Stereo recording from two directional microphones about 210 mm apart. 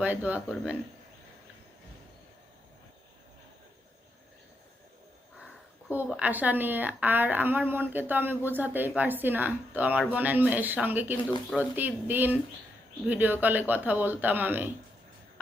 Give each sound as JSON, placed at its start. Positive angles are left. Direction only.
{"t": 0.0, "sound": "a woman's voice", "side_deg": -5}
{"t": 5.9, "sound": "a woman's voice", "side_deg": -5}